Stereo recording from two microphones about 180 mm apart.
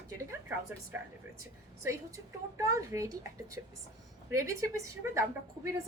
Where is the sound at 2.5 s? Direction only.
15° right (ahead or behind).